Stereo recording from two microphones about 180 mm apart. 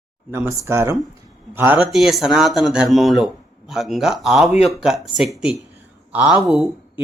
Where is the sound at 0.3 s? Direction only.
15° right (ahead or behind).